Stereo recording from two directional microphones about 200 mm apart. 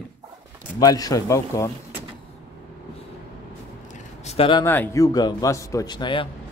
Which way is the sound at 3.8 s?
35° left (ahead or behind).